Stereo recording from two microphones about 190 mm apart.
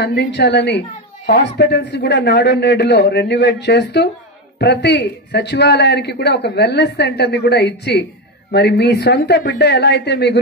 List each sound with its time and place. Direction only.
0.0 s a child's voice: 60° left (ahead or behind)